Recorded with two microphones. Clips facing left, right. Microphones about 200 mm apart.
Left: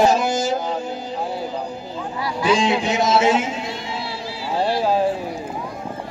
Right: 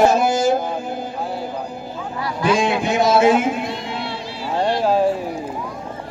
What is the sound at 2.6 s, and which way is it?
A man's voice, 55° right (ahead or behind).